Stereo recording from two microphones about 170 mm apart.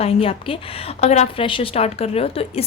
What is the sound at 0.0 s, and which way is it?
A woman's voice, 35° left (ahead or behind).